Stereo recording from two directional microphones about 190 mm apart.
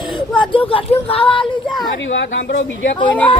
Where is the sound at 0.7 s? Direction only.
30° left (ahead or behind).